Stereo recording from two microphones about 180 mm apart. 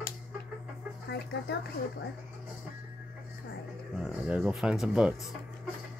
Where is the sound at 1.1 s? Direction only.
65° left (ahead or behind).